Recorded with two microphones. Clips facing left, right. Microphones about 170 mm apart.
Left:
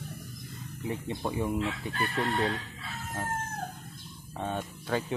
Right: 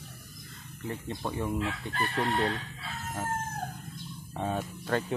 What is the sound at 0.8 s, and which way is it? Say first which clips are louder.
Speech: left 2 dB; 10° left (ahead or behind).